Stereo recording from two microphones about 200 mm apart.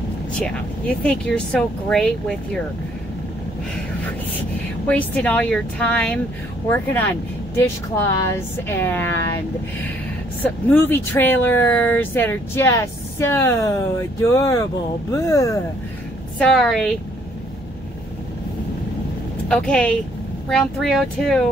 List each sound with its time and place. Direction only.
0.4 s speech: 5° left (ahead or behind)
4.8 s speech: 5° left (ahead or behind)
10.4 s speech: 10° left (ahead or behind)
16.3 s speech: centre (ahead or behind)
19.7 s speech: 5° left (ahead or behind)